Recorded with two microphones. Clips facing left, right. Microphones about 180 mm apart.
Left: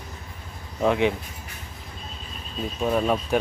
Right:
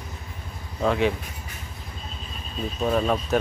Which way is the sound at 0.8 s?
15° left (ahead or behind).